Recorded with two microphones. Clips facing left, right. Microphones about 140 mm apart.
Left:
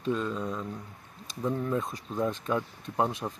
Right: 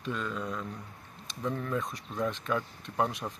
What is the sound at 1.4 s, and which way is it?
Speech, 15° left (ahead or behind).